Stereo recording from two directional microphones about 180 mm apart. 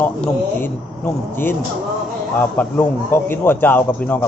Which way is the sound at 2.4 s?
10° left (ahead or behind).